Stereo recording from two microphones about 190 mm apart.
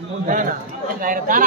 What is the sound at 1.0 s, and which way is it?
Speech, 45° right (ahead or behind).